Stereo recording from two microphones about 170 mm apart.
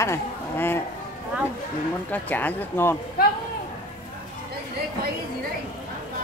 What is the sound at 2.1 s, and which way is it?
Speech, 10° left (ahead or behind).